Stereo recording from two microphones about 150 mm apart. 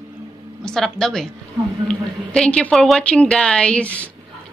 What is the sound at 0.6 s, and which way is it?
A woman's voice, 5° left (ahead or behind).